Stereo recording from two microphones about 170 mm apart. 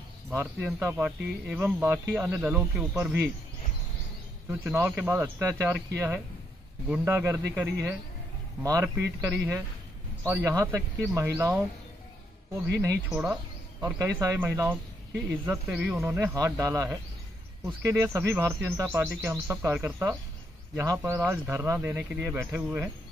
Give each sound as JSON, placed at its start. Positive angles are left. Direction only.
{"t": 0.3, "sound": "speech", "side_deg": -15}
{"t": 4.5, "sound": "speech", "side_deg": -10}
{"t": 13.2, "sound": "speech", "side_deg": -10}